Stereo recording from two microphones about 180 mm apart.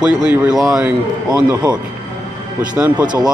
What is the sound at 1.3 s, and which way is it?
Speech, 20° right (ahead or behind).